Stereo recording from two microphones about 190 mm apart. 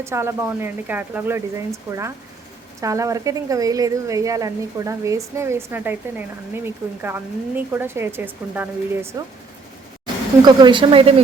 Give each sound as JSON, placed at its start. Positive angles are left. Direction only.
{"t": 0.0, "sound": "speech", "side_deg": -15}
{"t": 10.4, "sound": "a woman's voice", "side_deg": -25}